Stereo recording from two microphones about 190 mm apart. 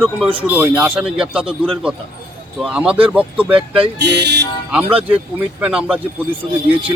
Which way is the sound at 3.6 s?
30° right (ahead or behind).